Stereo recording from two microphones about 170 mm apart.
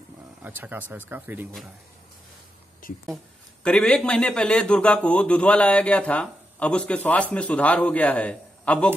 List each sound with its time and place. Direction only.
0.4 s speech: 10° right (ahead or behind)
2.8 s a sound: 55° left (ahead or behind)
3.6 s speech: 5° left (ahead or behind)